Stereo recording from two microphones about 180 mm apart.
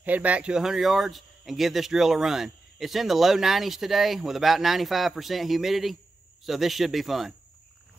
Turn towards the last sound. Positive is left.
turn(degrees=0)  # may be behind; listen again after turning